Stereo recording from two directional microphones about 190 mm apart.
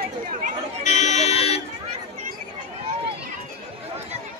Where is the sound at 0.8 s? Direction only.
40° left (ahead or behind).